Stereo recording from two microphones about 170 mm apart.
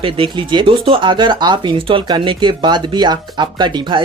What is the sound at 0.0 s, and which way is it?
Speech, 30° right (ahead or behind).